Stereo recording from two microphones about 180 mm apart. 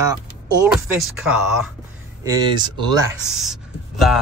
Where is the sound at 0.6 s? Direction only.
5° right (ahead or behind).